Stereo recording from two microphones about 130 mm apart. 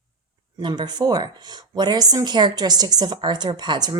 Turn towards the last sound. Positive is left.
turn(degrees=-35)  # may be behind; listen again after turning